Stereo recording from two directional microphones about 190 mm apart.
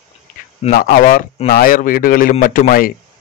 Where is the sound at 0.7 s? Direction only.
50° left (ahead or behind).